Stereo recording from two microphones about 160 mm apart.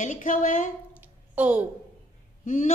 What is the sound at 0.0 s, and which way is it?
Speech, 55° left (ahead or behind).